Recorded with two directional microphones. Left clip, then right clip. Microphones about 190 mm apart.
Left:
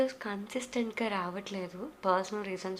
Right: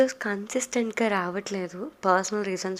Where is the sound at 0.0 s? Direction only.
40° right (ahead or behind).